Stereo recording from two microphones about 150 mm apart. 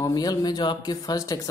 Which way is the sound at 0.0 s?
25° left (ahead or behind).